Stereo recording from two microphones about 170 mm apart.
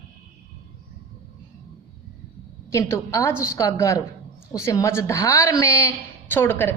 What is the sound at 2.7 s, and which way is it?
A woman's voice, 15° left (ahead or behind).